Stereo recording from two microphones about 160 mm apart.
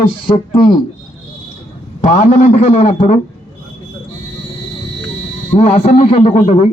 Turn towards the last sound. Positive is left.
turn(degrees=40)  # may be behind; listen again after turning